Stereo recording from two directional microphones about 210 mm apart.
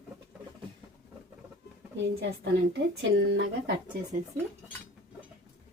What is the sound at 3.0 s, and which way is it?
Speech, 60° right (ahead or behind).